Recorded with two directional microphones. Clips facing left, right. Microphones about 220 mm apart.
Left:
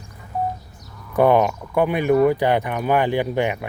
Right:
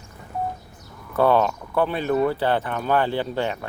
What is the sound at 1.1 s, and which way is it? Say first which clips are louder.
Speech: left 3 dB; 15° left (ahead or behind).